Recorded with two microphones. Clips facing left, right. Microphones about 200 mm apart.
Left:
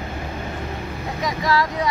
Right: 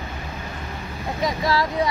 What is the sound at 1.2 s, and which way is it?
Speech, 30° right (ahead or behind).